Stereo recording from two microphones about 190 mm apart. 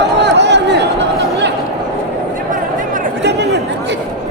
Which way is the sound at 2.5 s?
45° right (ahead or behind).